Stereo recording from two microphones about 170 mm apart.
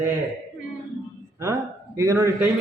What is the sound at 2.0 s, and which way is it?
Speech, 15° right (ahead or behind).